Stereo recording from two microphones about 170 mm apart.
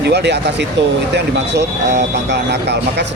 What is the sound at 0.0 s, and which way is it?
Speech, 80° right.